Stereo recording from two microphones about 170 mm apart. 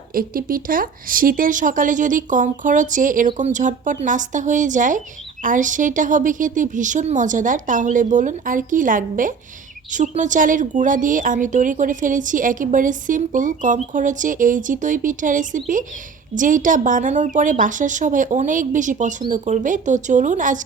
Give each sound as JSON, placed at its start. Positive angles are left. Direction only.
{"t": 0.1, "sound": "speech", "side_deg": -55}